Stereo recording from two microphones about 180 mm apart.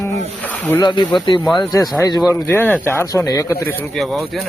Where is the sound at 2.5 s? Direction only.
10° left (ahead or behind).